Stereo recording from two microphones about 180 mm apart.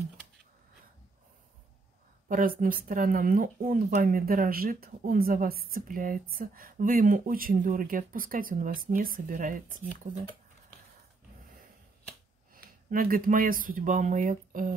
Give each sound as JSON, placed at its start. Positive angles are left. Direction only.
{"t": 2.2, "sound": "a woman's voice", "side_deg": -50}
{"t": 12.5, "sound": "speech", "side_deg": -55}